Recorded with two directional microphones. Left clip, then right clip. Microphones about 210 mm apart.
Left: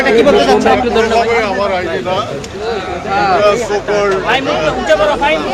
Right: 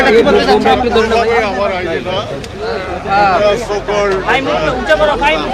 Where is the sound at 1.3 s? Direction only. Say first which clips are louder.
Even; centre (ahead or behind).